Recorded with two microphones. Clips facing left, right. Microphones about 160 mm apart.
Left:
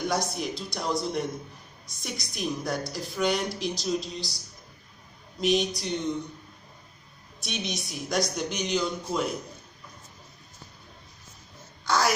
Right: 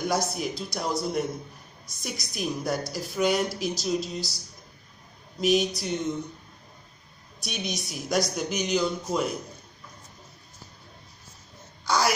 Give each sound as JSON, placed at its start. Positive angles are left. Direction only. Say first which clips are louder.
{"t": 0.3, "sound": "a woman's voice", "louder": "right 1 dB", "side_deg": 0}
{"t": 5.4, "sound": "a woman's voice", "louder": "right 2 dB", "side_deg": 0}
{"t": 7.4, "sound": "a woman's voice", "louder": "even", "side_deg": 0}
{"t": 11.8, "sound": "a sound", "louder": "even", "side_deg": 0}